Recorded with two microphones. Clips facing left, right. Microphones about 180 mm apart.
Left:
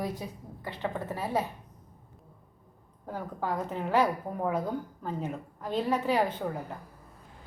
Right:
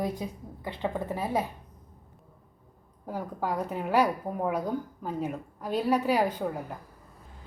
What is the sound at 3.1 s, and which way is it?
A woman's voice, 10° right (ahead or behind).